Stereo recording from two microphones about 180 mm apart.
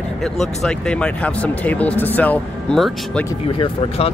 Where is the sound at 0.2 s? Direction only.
Centre (ahead or behind).